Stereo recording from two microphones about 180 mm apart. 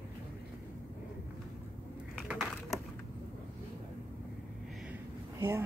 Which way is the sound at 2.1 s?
Centre (ahead or behind).